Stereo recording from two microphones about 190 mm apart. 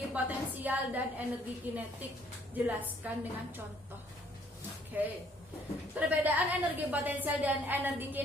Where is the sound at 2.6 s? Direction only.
10° right (ahead or behind).